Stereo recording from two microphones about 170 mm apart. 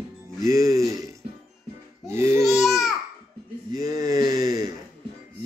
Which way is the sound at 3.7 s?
20° right (ahead or behind).